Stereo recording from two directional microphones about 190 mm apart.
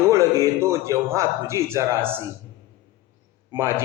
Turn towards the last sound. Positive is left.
turn(degrees=-15)  # may be behind; listen again after turning